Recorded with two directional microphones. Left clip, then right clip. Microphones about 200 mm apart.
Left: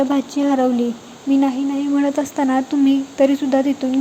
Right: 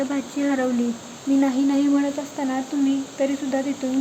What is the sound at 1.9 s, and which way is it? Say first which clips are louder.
Speech: left 5 dB; 25° left (ahead or behind).